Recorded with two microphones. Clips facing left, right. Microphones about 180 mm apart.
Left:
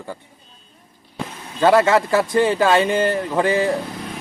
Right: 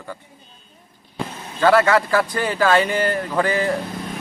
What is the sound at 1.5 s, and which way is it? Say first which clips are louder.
Speech: left 1 dB; 25° left (ahead or behind).